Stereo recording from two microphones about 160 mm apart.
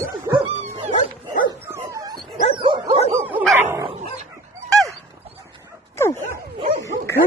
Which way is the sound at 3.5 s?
15° right (ahead or behind).